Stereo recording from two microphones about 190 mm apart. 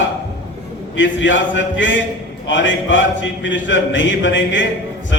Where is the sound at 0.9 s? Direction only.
75° left (ahead or behind).